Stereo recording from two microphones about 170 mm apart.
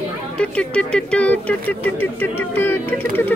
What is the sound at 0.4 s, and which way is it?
Speech, 5° left (ahead or behind).